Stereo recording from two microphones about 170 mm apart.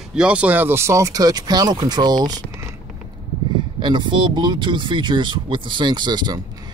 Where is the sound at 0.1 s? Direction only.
5° right (ahead or behind); by 2.7 s 25° right (ahead or behind).